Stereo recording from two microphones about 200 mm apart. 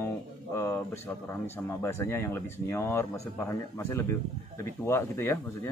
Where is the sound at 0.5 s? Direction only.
15° left (ahead or behind).